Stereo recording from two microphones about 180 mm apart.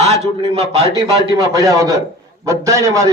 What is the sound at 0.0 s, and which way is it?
Speech, 35° right (ahead or behind).